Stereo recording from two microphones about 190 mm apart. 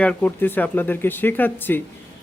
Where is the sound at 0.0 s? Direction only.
5° left (ahead or behind).